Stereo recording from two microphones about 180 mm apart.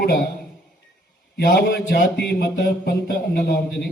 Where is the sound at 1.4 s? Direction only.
60° left (ahead or behind).